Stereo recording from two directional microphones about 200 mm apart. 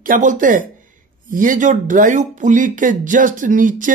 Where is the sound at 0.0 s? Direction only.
40° right (ahead or behind).